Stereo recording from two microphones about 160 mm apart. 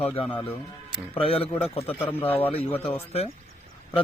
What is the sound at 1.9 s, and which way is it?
Speech, 10° left (ahead or behind).